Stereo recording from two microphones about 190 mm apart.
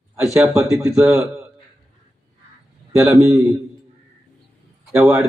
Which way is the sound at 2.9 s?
15° right (ahead or behind).